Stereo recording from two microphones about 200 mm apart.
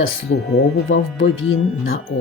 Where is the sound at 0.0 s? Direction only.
85° left.